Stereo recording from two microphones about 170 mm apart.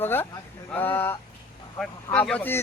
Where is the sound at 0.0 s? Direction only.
10° left (ahead or behind).